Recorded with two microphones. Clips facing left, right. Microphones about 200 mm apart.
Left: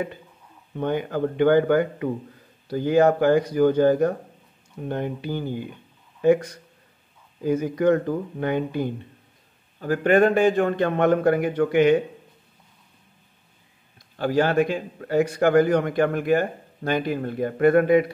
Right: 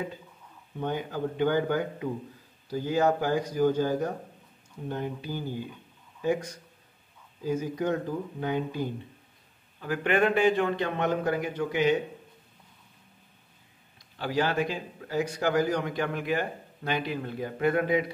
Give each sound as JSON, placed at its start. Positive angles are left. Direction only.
{"t": 0.7, "sound": "speech", "side_deg": 60}
{"t": 9.8, "sound": "a man's voice", "side_deg": 45}
{"t": 14.1, "sound": "a man's voice", "side_deg": 50}